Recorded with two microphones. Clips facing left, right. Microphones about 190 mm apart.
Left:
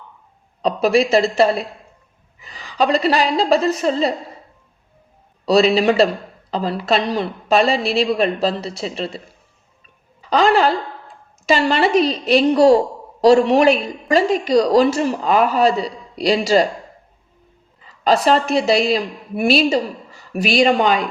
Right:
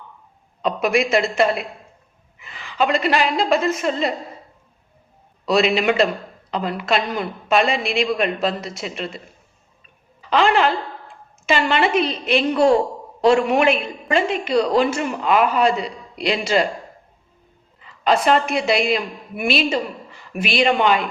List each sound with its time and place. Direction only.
0.6 s a woman's voice: 35° left (ahead or behind)
5.5 s a woman's voice: 35° left (ahead or behind)
10.2 s a woman's voice: 40° left (ahead or behind)
17.8 s a sound: 35° left (ahead or behind)
18.3 s a woman's voice: 35° left (ahead or behind)